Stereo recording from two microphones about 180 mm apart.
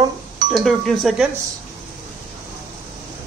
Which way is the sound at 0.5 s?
Centre (ahead or behind).